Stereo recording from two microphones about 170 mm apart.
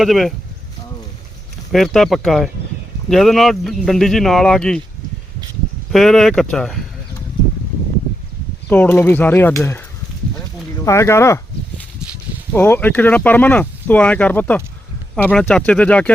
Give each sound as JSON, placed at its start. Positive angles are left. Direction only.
{"t": 0.0, "sound": "speech", "side_deg": 0}
{"t": 1.7, "sound": "speech", "side_deg": 0}
{"t": 5.9, "sound": "speech", "side_deg": 0}
{"t": 8.7, "sound": "speech", "side_deg": 10}
{"t": 10.8, "sound": "speech", "side_deg": 15}
{"t": 12.5, "sound": "speech", "side_deg": 10}